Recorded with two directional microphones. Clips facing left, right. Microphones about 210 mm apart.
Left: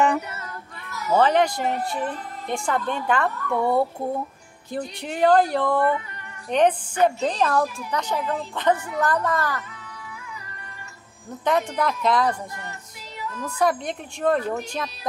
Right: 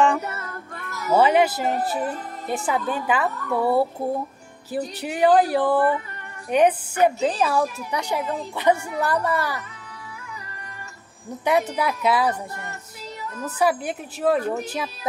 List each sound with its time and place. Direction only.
0.3 s child singing: 50° right (ahead or behind)
1.1 s a woman's voice: 10° right (ahead or behind)
11.4 s a woman's voice: 10° right (ahead or behind)
13.6 s a woman's voice: 5° right (ahead or behind)